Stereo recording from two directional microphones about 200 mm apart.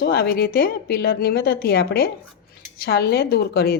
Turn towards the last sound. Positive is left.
turn(degrees=50)  # may be behind; listen again after turning